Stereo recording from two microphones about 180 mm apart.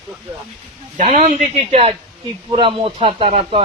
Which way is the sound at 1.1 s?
40° right (ahead or behind).